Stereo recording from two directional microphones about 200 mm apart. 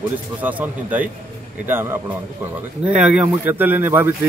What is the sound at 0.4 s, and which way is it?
A man's voice, 10° right (ahead or behind).